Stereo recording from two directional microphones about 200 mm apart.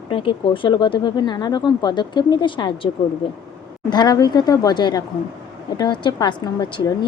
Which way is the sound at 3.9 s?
20° left (ahead or behind).